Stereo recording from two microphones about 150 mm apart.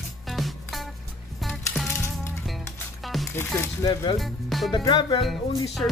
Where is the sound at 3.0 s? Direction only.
Centre (ahead or behind).